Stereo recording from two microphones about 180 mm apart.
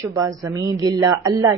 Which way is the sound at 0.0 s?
15° right (ahead or behind).